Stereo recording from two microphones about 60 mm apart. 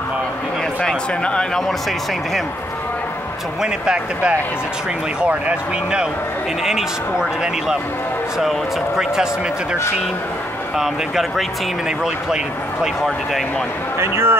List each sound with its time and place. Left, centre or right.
0.8 s a man's voice: centre
3.6 s speech: centre
6.6 s speech: centre
10.8 s speech: centre
12.8 s speech: centre
13.9 s speech: right